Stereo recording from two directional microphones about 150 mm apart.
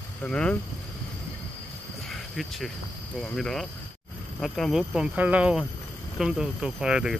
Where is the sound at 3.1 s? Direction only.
5° left (ahead or behind).